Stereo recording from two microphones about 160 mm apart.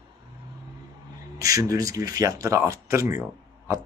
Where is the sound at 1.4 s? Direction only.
20° right (ahead or behind).